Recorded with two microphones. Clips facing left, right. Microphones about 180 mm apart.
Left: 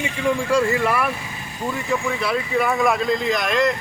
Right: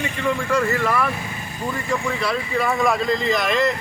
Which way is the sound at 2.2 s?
5° left (ahead or behind).